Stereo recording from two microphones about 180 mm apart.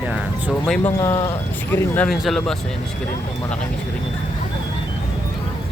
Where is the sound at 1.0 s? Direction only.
15° left (ahead or behind).